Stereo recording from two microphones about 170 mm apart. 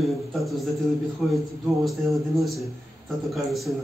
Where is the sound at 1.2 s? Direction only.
Centre (ahead or behind).